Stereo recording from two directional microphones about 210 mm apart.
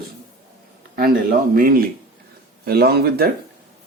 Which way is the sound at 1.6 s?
45° right (ahead or behind).